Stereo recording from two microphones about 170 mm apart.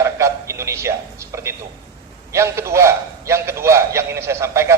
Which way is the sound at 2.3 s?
15° right (ahead or behind).